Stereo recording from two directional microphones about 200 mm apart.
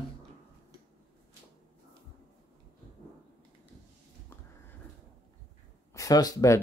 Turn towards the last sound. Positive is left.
turn(degrees=15)  # may be behind; listen again after turning